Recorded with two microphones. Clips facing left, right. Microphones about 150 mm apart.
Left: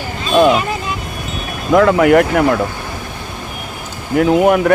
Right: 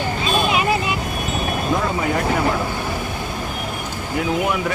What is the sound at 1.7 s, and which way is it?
Speech, 90° left.